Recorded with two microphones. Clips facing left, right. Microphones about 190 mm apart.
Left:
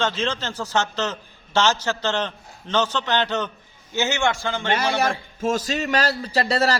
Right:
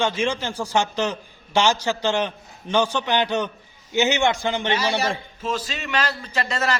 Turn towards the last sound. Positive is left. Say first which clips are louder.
# left 4 dB
turn(degrees=35)  # may be behind; listen again after turning